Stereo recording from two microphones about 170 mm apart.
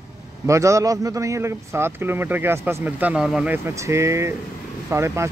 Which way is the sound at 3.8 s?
15° right (ahead or behind).